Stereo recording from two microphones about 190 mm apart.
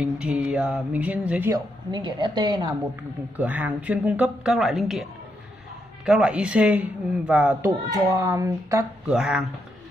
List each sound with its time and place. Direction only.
0.0 s mantra: 5° right (ahead or behind)
1.5 s a woman's voice: 25° right (ahead or behind)
3.3 s speech: 10° right (ahead or behind)
6.0 s speech: 5° right (ahead or behind)
7.9 s speech: 20° right (ahead or behind)
9.0 s mantra: 5° right (ahead or behind)